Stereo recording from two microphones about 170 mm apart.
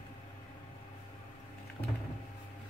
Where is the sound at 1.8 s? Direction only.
30° left (ahead or behind).